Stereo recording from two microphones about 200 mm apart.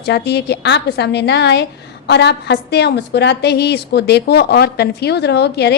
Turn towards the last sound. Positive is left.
turn(degrees=55)  # may be behind; listen again after turning